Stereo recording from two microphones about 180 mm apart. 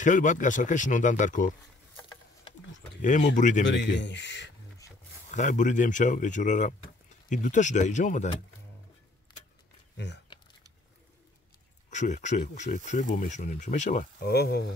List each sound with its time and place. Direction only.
0.0 s speech: 45° left (ahead or behind)
3.3 s speech: 45° left (ahead or behind)
3.6 s speech: 80° left
5.3 s speech: 45° left (ahead or behind)
9.9 s speech: 70° left (ahead or behind)
11.9 s speech: 40° left (ahead or behind); by 14.7 s 65° left (ahead or behind)